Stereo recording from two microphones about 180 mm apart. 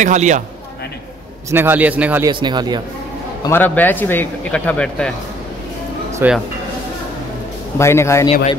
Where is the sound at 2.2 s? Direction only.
25° right (ahead or behind).